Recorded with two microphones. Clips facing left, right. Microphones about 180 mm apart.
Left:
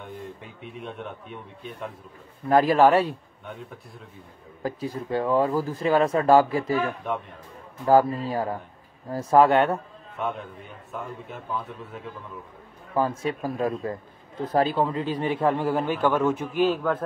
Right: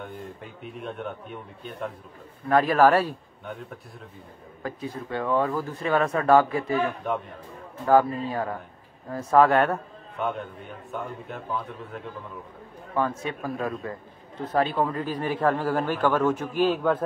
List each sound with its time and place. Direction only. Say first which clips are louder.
0.0 s a man's voice: even; centre (ahead or behind)
2.5 s speech: left 1 dB; 30° left (ahead or behind)
4.6 s speech: left 3 dB; 35° left (ahead or behind)
8.2 s speech: left 1 dB; 30° left (ahead or behind)
9.7 s a man's voice: left 1 dB; centre (ahead or behind)
12.9 s a man's voice: left 2 dB; 35° left (ahead or behind); by 16.6 s 15° left (ahead or behind)
16.7 s a man's voice: right 2 dB; 5° right (ahead or behind)